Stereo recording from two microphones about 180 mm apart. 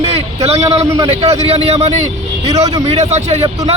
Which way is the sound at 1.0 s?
35° right (ahead or behind).